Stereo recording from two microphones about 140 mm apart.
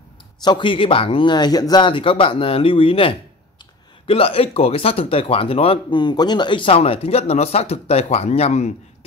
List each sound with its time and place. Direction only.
0.4 s speech: 35° left (ahead or behind); by 8.7 s 50° left (ahead or behind)